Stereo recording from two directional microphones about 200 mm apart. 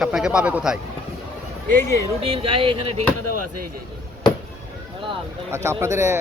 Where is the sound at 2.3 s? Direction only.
25° right (ahead or behind).